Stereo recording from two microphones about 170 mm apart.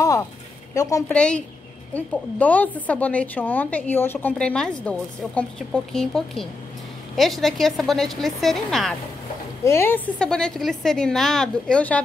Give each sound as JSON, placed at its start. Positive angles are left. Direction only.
{"t": 0.0, "sound": "a sound", "side_deg": 20}
{"t": 0.7, "sound": "a woman's voice", "side_deg": 20}
{"t": 1.1, "sound": "a woman's voice", "side_deg": 5}
{"t": 9.7, "sound": "a woman's voice", "side_deg": 15}